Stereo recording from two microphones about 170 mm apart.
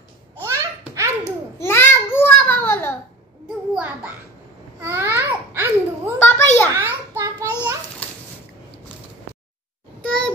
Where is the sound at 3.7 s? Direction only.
10° right (ahead or behind).